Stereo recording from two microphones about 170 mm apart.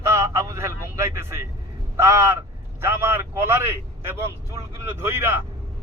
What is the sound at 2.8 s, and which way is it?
Vehicle, 15° right (ahead or behind).